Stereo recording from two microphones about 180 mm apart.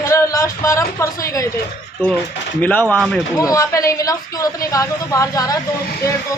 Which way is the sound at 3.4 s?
20° left (ahead or behind).